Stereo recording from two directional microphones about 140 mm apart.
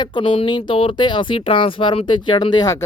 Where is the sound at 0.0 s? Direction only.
35° left (ahead or behind).